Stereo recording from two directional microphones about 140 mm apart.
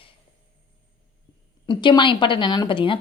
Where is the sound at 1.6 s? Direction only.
35° left (ahead or behind).